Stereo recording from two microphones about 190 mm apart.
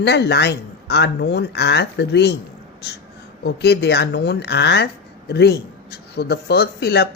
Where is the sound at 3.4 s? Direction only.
60° left (ahead or behind).